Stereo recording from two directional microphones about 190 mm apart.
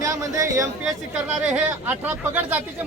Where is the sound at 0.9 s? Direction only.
5° right (ahead or behind).